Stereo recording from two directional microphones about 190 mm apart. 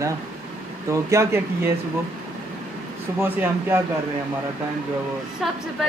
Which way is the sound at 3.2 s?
10° right (ahead or behind).